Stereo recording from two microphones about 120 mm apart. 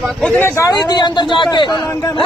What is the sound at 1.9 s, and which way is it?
Speech, 20° left (ahead or behind).